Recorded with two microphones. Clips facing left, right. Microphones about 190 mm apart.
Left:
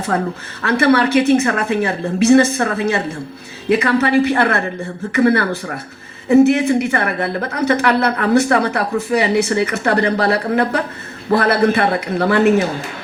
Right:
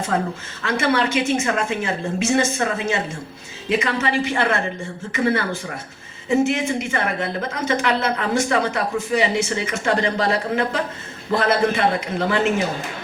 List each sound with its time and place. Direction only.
0.1 s speech: 55° left (ahead or behind)